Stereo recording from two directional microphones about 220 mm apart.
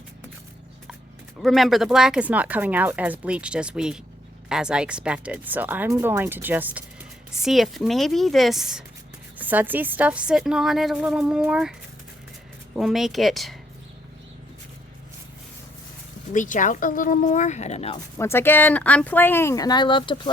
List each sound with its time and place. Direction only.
1.4 s speech: centre (ahead or behind)
12.7 s speech: centre (ahead or behind)
16.3 s speech: 35° left (ahead or behind)
18.2 s speech: 10° left (ahead or behind)